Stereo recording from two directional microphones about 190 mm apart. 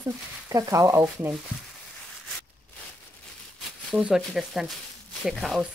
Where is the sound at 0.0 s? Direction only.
15° right (ahead or behind).